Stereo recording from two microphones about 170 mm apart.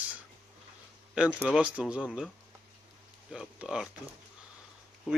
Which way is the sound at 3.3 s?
5° right (ahead or behind).